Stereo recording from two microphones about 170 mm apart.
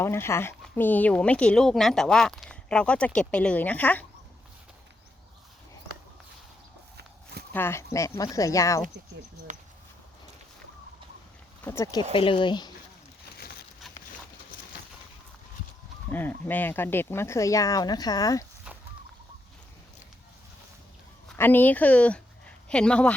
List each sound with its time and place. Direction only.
0.0 s speech: 15° left (ahead or behind)
7.5 s speech: 15° left (ahead or behind)
11.6 s speech: 15° left (ahead or behind)
12.1 s speech: 30° left (ahead or behind)
16.0 s speech: 10° left (ahead or behind)
21.3 s speech: 10° left (ahead or behind)